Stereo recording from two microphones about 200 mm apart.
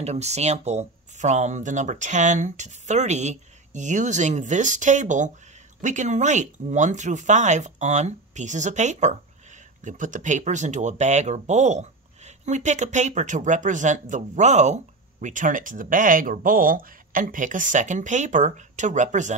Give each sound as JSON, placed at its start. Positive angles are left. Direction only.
{"t": 0.0, "sound": "speech", "side_deg": -35}